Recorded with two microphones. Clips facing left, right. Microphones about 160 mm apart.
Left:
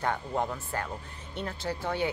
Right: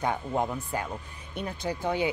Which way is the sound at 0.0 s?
15° right (ahead or behind).